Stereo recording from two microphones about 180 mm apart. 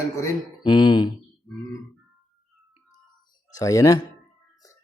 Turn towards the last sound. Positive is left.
turn(degrees=20)  # may be behind; listen again after turning